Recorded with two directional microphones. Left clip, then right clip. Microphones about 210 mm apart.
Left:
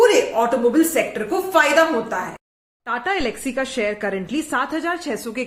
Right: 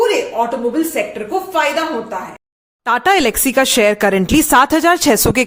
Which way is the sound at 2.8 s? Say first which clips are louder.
Right 10 dB; 50° right (ahead or behind).